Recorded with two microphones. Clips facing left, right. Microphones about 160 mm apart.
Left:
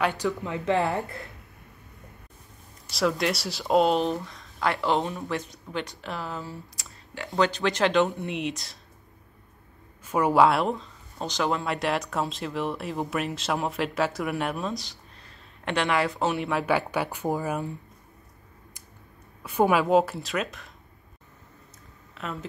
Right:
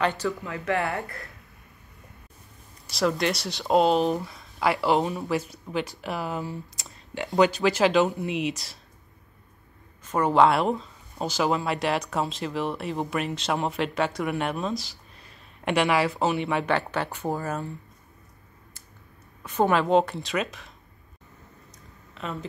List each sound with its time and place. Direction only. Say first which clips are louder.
0.4 s speech: left 2 dB; 20° left (ahead or behind)
2.9 s speech: right 1 dB; centre (ahead or behind)
10.0 s speech: even; 10° left (ahead or behind)
19.4 s speech: even; 10° left (ahead or behind)
22.1 s speech: right 1 dB; centre (ahead or behind)